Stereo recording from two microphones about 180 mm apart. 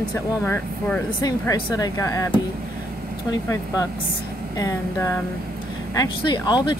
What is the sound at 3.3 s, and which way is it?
Speech, 20° left (ahead or behind).